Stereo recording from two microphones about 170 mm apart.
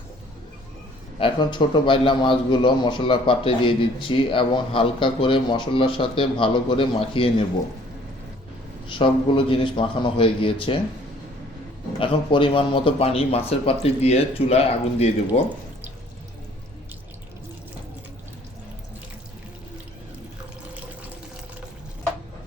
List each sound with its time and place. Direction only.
1.2 s a man's voice: 30° left (ahead or behind)
8.9 s a man's voice: 30° left (ahead or behind)
11.9 s a man's voice: 30° left (ahead or behind)